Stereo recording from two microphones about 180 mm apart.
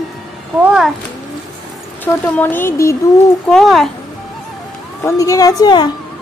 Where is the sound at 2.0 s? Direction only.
10° left (ahead or behind).